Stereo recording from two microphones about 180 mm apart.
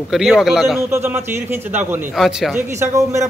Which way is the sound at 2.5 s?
15° right (ahead or behind).